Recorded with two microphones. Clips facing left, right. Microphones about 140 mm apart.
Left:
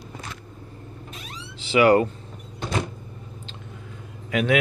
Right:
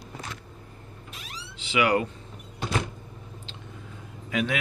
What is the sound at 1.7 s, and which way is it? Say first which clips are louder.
Speech: left 7 dB; 40° left (ahead or behind).